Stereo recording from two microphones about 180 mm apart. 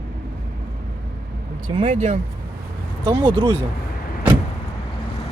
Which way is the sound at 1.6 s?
30° right (ahead or behind).